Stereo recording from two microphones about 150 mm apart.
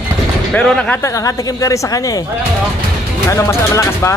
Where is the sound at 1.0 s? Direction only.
20° left (ahead or behind).